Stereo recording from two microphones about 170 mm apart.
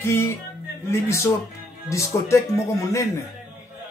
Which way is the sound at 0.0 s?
15° left (ahead or behind).